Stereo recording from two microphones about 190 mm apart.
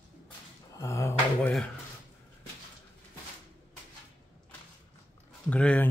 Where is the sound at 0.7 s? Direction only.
15° left (ahead or behind).